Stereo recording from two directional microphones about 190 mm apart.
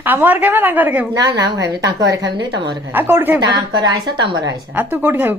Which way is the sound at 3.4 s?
20° right (ahead or behind).